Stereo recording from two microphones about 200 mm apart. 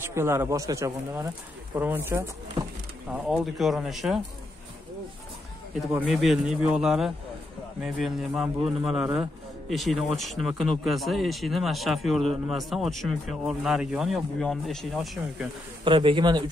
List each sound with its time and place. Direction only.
0.0 s a man's voice: 15° right (ahead or behind)
5.9 s a man's voice: 5° right (ahead or behind)
15.8 s a man's voice: 25° right (ahead or behind)